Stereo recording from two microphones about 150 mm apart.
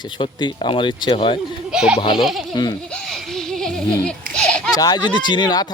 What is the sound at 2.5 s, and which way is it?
Speech, 30° left (ahead or behind).